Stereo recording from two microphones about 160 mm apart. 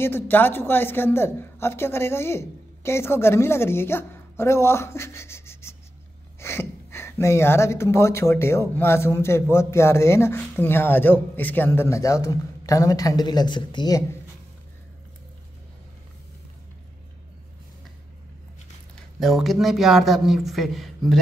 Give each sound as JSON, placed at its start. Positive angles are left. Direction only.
{"t": 0.0, "sound": "a man's voice", "side_deg": 15}
{"t": 18.9, "sound": "speech", "side_deg": 0}